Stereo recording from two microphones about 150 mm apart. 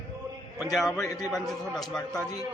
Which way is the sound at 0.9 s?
20° left (ahead or behind).